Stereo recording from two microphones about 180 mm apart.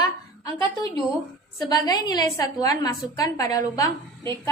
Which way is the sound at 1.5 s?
20° left (ahead or behind).